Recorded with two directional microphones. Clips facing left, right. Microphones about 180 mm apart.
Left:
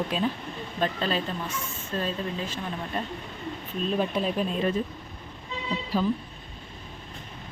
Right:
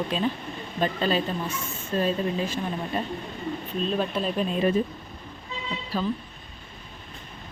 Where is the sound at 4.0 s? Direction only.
10° left (ahead or behind).